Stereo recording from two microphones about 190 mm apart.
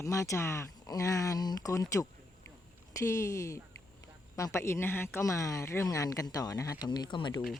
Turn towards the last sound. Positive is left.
turn(degrees=25)  # may be behind; listen again after turning